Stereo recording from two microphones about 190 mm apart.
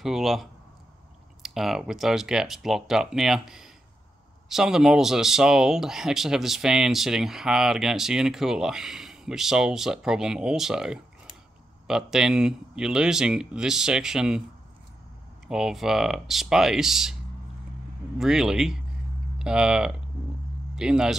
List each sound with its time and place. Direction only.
0.0 s speech: centre (ahead or behind)
15.4 s speech: centre (ahead or behind)
18.1 s speech: centre (ahead or behind)